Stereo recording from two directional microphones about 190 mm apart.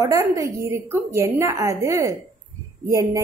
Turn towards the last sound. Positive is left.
turn(degrees=-15)  # may be behind; listen again after turning